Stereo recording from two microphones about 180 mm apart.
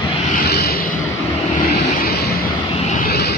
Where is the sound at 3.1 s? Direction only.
65° left (ahead or behind).